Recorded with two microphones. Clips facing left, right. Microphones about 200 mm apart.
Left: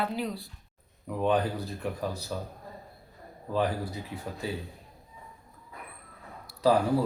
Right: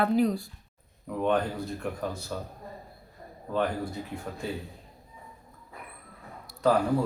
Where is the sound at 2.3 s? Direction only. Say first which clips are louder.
Even; 5° left (ahead or behind).